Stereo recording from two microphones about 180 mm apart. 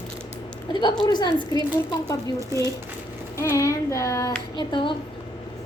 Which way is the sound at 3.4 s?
15° left (ahead or behind).